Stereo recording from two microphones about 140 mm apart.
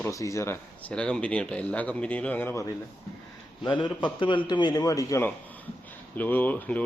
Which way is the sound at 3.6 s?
35° left (ahead or behind).